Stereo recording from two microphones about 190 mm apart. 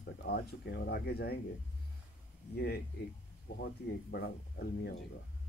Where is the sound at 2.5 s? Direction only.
55° left (ahead or behind).